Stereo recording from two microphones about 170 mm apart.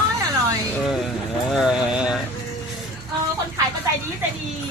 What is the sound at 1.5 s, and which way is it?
Speech, 5° right (ahead or behind).